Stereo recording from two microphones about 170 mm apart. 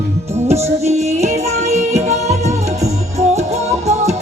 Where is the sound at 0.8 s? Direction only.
40° right (ahead or behind).